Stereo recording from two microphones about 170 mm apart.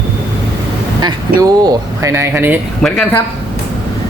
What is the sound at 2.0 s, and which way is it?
Speech, 15° right (ahead or behind).